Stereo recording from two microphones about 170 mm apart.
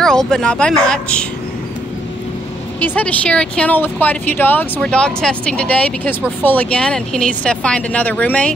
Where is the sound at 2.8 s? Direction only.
10° left (ahead or behind).